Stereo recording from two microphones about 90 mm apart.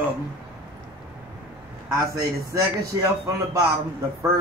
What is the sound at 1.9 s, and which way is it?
A man's voice, 40° right (ahead or behind).